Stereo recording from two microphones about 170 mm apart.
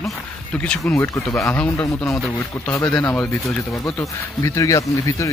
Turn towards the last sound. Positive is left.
turn(degrees=20)  # may be behind; listen again after turning